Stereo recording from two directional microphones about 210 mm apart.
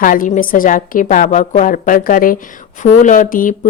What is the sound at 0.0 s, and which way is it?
A woman's voice, 40° left (ahead or behind).